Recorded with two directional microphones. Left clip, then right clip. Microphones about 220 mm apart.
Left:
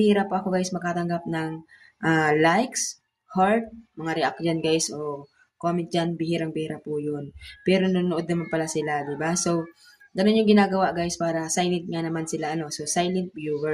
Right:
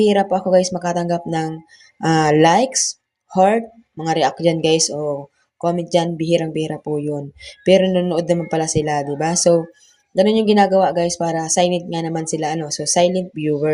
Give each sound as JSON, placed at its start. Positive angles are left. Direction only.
{"t": 0.0, "sound": "a woman's voice", "side_deg": -20}